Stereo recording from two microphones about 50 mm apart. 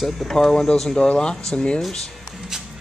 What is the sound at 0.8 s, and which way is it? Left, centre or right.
Speech, left.